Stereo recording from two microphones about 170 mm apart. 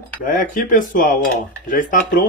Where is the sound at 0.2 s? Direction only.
50° left (ahead or behind).